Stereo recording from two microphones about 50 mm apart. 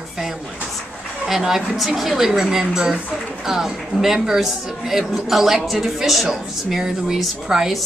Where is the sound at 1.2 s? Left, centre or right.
Centre.